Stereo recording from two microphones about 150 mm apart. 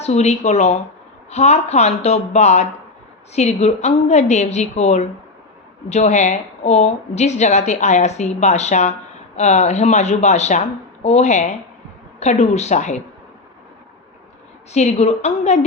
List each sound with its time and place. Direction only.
0.0 s a woman's voice: 45° left (ahead or behind)
14.7 s a woman's voice: 45° left (ahead or behind)